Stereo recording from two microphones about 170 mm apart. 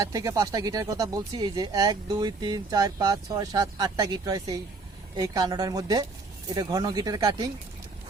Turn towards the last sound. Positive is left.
turn(degrees=-20)  # may be behind; listen again after turning